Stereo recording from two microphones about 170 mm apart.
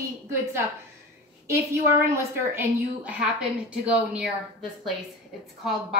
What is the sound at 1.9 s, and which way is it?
A woman's voice, 15° right (ahead or behind).